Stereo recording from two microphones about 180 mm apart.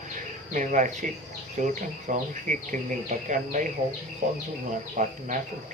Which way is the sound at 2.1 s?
45° right (ahead or behind).